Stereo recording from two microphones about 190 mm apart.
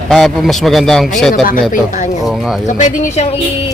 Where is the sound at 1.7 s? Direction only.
40° left (ahead or behind).